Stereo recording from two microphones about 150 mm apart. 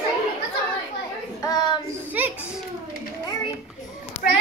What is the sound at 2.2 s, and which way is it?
Children playing, 10° right (ahead or behind).